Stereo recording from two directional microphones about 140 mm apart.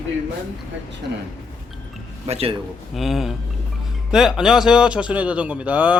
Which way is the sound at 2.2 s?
50° right (ahead or behind).